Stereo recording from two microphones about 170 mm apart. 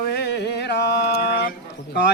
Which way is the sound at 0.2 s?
80° left.